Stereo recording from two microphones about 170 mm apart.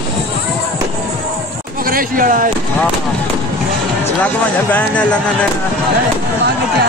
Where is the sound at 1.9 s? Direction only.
55° right (ahead or behind).